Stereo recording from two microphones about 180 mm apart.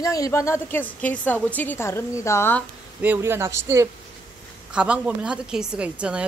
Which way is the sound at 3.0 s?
10° right (ahead or behind).